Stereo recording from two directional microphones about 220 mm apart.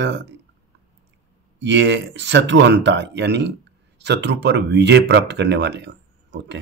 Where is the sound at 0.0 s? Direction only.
55° right (ahead or behind).